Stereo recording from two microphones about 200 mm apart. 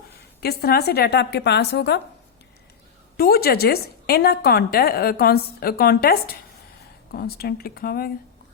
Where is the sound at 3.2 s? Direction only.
50° left (ahead or behind).